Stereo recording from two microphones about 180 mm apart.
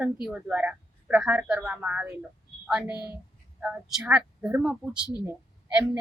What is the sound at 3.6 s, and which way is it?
Speech, 5° right (ahead or behind).